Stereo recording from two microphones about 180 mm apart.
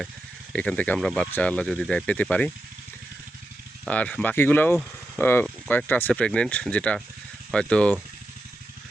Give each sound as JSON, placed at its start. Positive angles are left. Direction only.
{"t": 0.5, "sound": "speech", "side_deg": 5}
{"t": 3.8, "sound": "speech", "side_deg": 5}